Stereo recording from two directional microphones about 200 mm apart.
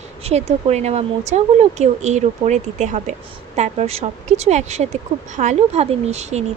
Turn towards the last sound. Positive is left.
turn(degrees=-35)  # may be behind; listen again after turning